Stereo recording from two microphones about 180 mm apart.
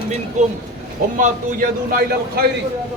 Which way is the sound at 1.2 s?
50° right (ahead or behind).